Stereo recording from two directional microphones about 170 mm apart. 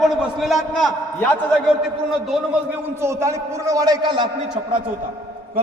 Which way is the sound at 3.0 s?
15° right (ahead or behind).